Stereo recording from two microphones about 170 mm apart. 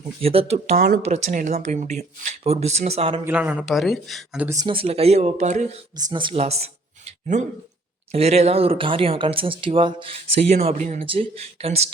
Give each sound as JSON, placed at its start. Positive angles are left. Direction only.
{"t": 0.2, "sound": "speech", "side_deg": -35}
{"t": 3.2, "sound": "speech", "side_deg": -10}
{"t": 4.6, "sound": "speech", "side_deg": -30}
{"t": 6.0, "sound": "speech", "side_deg": -25}
{"t": 11.0, "sound": "speech", "side_deg": -30}